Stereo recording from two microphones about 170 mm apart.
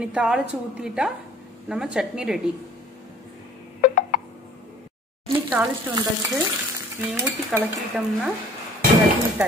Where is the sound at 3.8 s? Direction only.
50° left (ahead or behind).